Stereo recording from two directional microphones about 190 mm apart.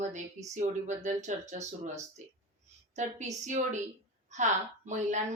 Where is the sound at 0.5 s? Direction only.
40° right (ahead or behind).